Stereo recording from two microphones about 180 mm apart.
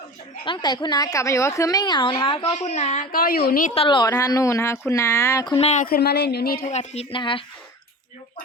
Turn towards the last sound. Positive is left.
turn(degrees=30)  # may be behind; listen again after turning